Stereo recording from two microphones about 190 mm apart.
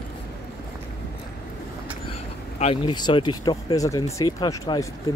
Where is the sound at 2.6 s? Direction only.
30° left (ahead or behind).